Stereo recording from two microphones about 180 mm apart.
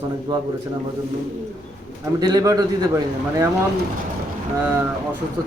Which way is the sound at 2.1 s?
20° right (ahead or behind).